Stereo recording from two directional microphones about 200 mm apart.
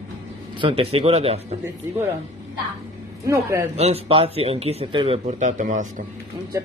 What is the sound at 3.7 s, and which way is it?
Speech, 30° right (ahead or behind).